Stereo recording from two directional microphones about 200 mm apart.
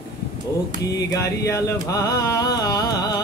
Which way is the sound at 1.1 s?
15° left (ahead or behind).